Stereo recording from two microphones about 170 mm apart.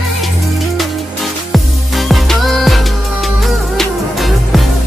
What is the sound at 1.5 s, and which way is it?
Music, centre (ahead or behind).